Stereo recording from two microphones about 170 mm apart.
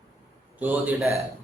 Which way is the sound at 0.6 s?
10° right (ahead or behind).